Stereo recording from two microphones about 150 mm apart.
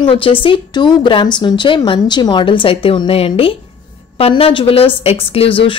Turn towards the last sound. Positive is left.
turn(degrees=35)  # may be behind; listen again after turning